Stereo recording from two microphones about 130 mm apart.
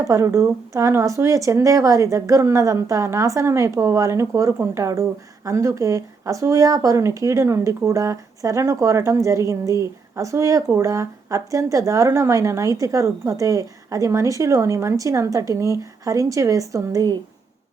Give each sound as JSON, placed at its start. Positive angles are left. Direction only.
{"t": 0.0, "sound": "speech", "side_deg": -25}